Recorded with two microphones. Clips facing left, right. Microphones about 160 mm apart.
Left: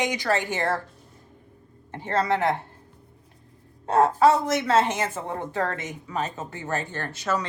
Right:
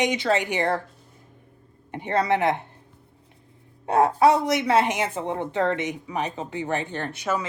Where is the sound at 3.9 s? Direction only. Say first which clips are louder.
Even; 15° right (ahead or behind).